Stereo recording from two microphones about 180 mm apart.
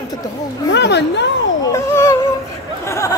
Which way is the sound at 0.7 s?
75° left (ahead or behind).